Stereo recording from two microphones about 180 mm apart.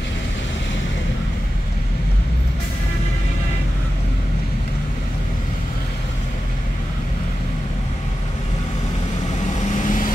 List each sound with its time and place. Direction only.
9.6 s vehicle: 45° left (ahead or behind)